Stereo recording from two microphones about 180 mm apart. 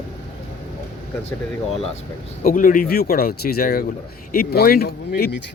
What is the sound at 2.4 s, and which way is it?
Speech, 50° left (ahead or behind).